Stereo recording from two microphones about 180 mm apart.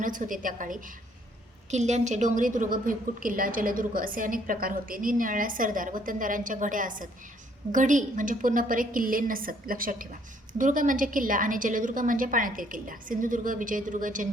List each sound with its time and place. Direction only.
0.0 s a woman's voice: 50° right (ahead or behind)